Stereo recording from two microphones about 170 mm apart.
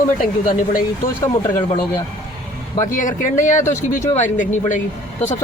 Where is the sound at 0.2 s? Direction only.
55° left (ahead or behind).